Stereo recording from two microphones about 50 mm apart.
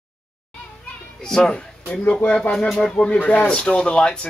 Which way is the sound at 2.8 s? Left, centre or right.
Left.